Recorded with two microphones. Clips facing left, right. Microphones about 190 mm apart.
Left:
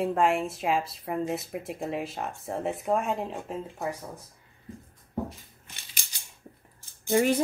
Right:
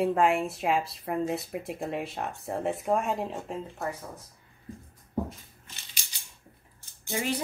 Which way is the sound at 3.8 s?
10° left (ahead or behind).